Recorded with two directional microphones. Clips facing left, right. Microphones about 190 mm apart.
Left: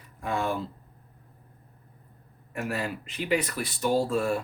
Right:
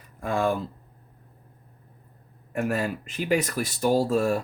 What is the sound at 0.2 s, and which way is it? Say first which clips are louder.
Speech: right 4 dB; 50° right (ahead or behind).